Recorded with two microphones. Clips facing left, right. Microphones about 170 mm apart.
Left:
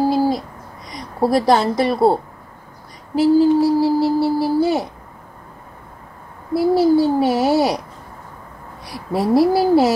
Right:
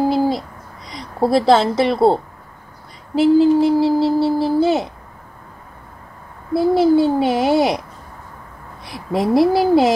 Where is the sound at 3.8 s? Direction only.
10° left (ahead or behind).